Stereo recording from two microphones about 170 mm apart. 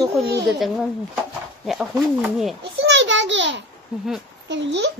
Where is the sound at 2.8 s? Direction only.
90° right.